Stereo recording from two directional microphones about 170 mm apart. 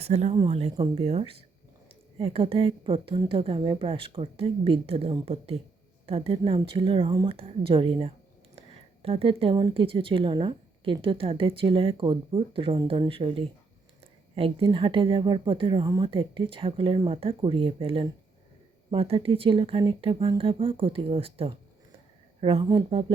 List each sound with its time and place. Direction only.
0.0 s speech: 40° right (ahead or behind)